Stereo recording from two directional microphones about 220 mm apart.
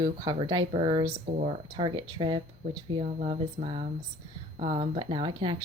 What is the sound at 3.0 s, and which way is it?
A woman's voice, 35° right (ahead or behind).